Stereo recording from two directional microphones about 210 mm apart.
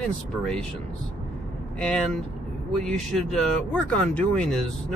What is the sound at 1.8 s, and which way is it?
Speech, 5° left (ahead or behind).